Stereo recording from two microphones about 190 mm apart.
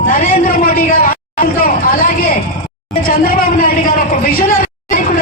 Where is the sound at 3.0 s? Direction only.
50° left (ahead or behind).